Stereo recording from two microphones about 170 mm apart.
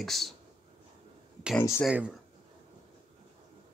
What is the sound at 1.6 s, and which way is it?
Speech, 15° left (ahead or behind).